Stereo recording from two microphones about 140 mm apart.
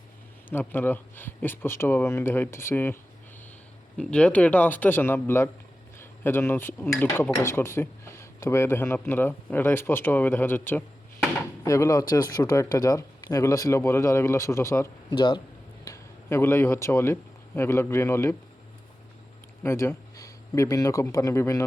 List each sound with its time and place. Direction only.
0.5 s speech: 15° left (ahead or behind)
15.1 s speech: 35° left (ahead or behind)
15.8 s speech: 20° left (ahead or behind)
19.6 s speech: 20° left (ahead or behind)